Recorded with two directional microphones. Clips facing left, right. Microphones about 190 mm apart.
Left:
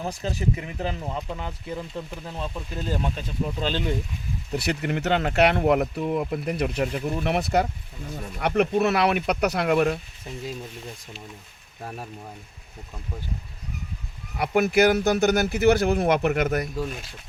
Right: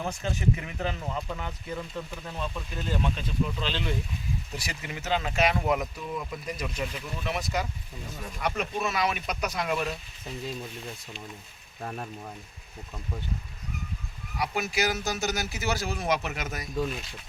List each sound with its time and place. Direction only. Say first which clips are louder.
0.0 s speech: left 2 dB; 35° left (ahead or behind)
4.5 s speech: left 11 dB; 65° left (ahead or behind)
10.2 s speech: left 1 dB; 10° left (ahead or behind)
11.8 s speech: even; 5° left (ahead or behind)
14.3 s speech: left 9 dB; 55° left (ahead or behind)